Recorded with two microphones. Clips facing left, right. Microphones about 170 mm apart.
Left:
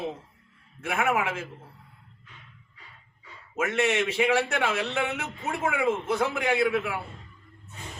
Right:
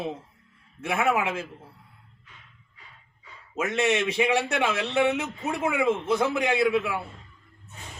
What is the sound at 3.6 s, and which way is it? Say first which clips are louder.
A man's voice: right 1 dB; 20° right (ahead or behind).